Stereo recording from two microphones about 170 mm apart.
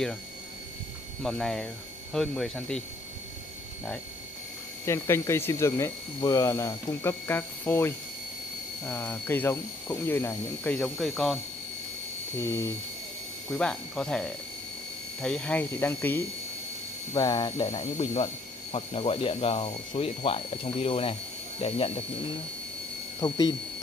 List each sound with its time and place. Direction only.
1.2 s speech: centre (ahead or behind)
4.8 s speech: 15° left (ahead or behind); by 11.3 s centre (ahead or behind)
12.4 s speech: 15° left (ahead or behind)
13.5 s speech: 5° left (ahead or behind)
17.1 s speech: 25° left (ahead or behind)
23.2 s speech: 20° left (ahead or behind)